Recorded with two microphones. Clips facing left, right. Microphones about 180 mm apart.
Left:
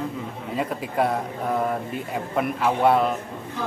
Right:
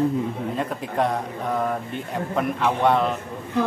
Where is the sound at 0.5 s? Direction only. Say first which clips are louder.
Left 2 dB; 5° left (ahead or behind).